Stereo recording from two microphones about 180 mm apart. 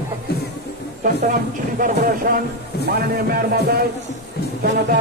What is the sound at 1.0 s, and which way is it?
Speech, 50° right (ahead or behind).